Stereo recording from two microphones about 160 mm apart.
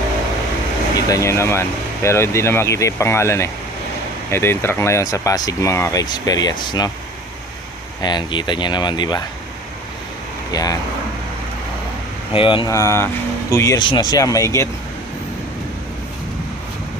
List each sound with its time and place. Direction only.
1.0 s speech: 20° left (ahead or behind)
8.0 s speech: 30° left (ahead or behind)
10.5 s speech: 20° left (ahead or behind)
12.3 s speech: 35° left (ahead or behind)
12.6 s speech: 20° left (ahead or behind)